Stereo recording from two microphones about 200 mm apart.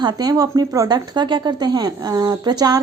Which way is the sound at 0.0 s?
20° right (ahead or behind).